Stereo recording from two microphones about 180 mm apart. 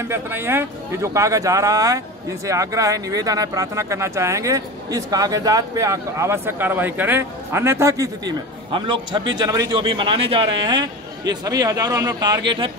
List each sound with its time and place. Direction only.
0.1 s speech: 10° right (ahead or behind)